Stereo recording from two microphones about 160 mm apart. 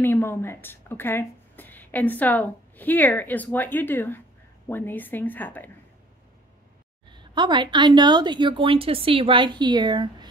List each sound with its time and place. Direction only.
0.0 s a woman's voice: 15° left (ahead or behind)
7.1 s a woman's voice: 30° right (ahead or behind)